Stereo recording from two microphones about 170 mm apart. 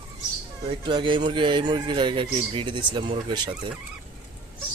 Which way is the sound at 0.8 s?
30° right (ahead or behind).